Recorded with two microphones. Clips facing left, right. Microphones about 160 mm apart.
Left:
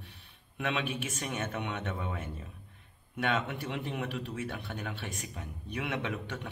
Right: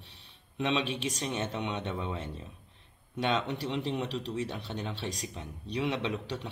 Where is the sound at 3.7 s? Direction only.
25° right (ahead or behind).